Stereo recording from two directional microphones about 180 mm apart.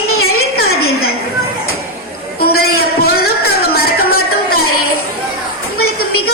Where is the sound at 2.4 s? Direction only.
60° left (ahead or behind).